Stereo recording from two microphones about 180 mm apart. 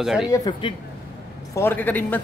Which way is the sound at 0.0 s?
5° right (ahead or behind).